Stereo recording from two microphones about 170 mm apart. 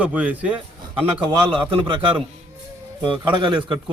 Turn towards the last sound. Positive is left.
turn(degrees=-30)  # may be behind; listen again after turning